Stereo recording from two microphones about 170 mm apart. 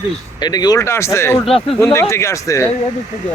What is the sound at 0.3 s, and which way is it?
A man's voice, 25° left (ahead or behind).